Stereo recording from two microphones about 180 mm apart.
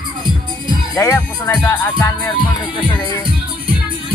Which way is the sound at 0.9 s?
15° left (ahead or behind).